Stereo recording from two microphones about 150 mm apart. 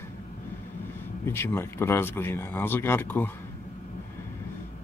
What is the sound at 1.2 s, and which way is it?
Speech, 15° left (ahead or behind).